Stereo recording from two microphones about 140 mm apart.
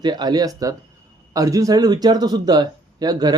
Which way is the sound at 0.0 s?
30° right (ahead or behind).